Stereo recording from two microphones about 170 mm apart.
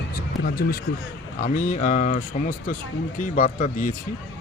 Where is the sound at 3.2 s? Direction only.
45° left (ahead or behind).